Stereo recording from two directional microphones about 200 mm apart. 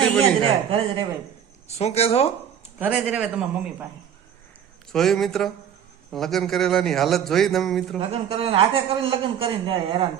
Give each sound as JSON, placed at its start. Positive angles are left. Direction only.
{"t": 0.2, "sound": "a man's voice", "side_deg": -25}
{"t": 1.6, "sound": "speech", "side_deg": 30}
{"t": 2.7, "sound": "a man's voice", "side_deg": -5}
{"t": 4.9, "sound": "a man's voice", "side_deg": 0}
{"t": 7.9, "sound": "a man's voice", "side_deg": -30}